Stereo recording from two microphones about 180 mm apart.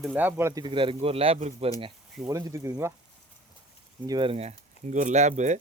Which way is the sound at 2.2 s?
20° right (ahead or behind).